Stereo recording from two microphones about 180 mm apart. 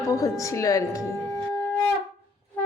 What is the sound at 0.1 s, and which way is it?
Speech, 20° left (ahead or behind).